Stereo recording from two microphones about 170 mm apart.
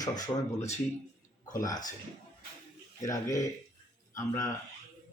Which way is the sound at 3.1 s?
20° left (ahead or behind).